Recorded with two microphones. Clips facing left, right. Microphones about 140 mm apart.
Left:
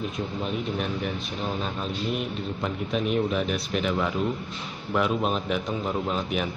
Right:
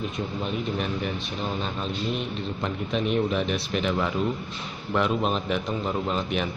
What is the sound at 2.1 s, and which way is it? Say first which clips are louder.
Speech: even; 5° left (ahead or behind).